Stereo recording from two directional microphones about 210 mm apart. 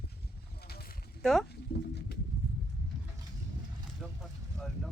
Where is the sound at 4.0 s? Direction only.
Centre (ahead or behind).